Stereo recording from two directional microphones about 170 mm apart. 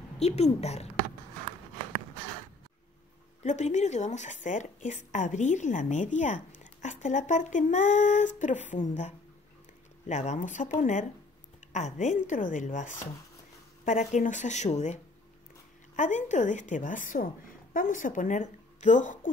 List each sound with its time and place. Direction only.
0.2 s a woman's voice: 40° left (ahead or behind)
3.4 s a woman's voice: 45° left (ahead or behind)
16.0 s a woman's voice: 45° left (ahead or behind)